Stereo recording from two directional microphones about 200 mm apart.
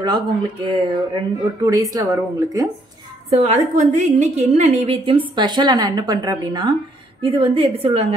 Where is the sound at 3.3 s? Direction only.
30° right (ahead or behind).